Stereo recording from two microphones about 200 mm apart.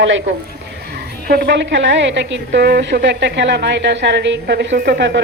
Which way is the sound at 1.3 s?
55° right (ahead or behind).